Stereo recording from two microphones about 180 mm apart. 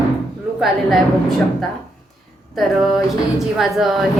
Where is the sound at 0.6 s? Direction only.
Centre (ahead or behind).